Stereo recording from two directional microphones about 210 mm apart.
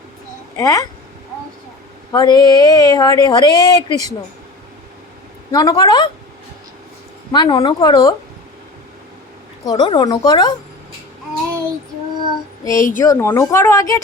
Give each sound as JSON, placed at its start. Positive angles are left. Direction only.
{"t": 0.5, "sound": "a woman's voice", "side_deg": 15}
{"t": 2.1, "sound": "speech", "side_deg": 20}
{"t": 5.5, "sound": "speech", "side_deg": 20}
{"t": 7.3, "sound": "speech", "side_deg": 20}
{"t": 9.6, "sound": "speech", "side_deg": 20}
{"t": 12.6, "sound": "a woman's voice", "side_deg": 15}